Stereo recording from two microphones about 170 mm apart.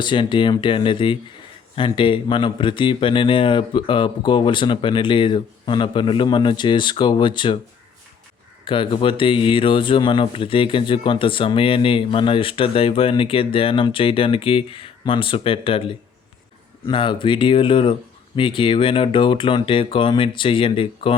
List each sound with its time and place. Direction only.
0.0 s speech: 30° left (ahead or behind)
8.6 s speech: 30° left (ahead or behind)